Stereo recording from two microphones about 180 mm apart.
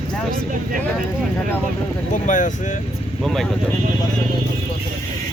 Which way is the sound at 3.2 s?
Centre (ahead or behind).